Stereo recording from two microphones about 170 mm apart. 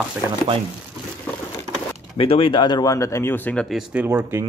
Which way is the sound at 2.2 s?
35° left (ahead or behind).